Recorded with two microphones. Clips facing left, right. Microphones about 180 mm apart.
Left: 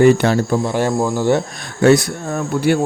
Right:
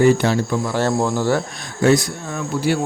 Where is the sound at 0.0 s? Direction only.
65° left (ahead or behind).